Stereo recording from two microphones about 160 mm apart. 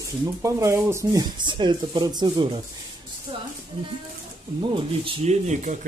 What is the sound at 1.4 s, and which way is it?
Speech, 30° right (ahead or behind).